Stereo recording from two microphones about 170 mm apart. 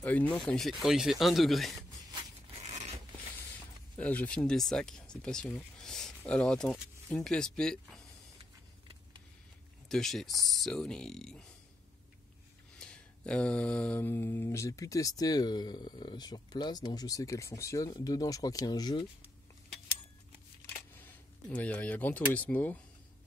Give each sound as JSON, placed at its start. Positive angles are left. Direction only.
{"t": 0.0, "sound": "speech", "side_deg": 10}
{"t": 2.6, "sound": "zipper", "side_deg": -45}
{"t": 4.0, "sound": "speech", "side_deg": 10}
{"t": 9.8, "sound": "speech", "side_deg": 0}
{"t": 12.7, "sound": "mantra", "side_deg": 5}
{"t": 20.7, "sound": "speech", "side_deg": 10}